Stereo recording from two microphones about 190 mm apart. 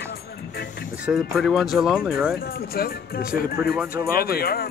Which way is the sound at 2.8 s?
50° left (ahead or behind).